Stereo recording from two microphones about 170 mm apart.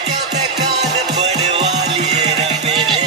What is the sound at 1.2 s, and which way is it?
Music, 40° right (ahead or behind).